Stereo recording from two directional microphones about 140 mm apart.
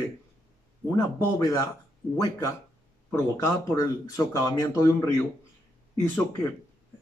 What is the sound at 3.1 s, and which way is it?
Speech, 20° left (ahead or behind).